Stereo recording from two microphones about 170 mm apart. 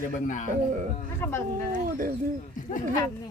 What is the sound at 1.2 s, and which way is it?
Speech, 15° left (ahead or behind).